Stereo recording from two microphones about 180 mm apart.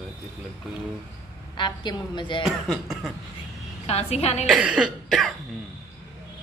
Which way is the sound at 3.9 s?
35° left (ahead or behind).